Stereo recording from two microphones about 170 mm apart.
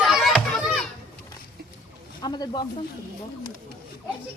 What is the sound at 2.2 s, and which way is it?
Snake, 25° left (ahead or behind).